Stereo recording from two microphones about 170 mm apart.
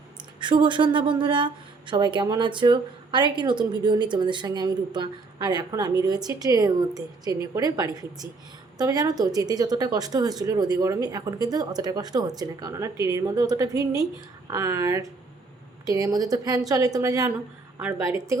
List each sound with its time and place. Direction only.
0.3 s a woman's voice: 25° right (ahead or behind)